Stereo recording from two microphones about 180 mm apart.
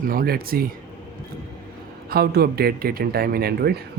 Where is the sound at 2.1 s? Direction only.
60° right (ahead or behind).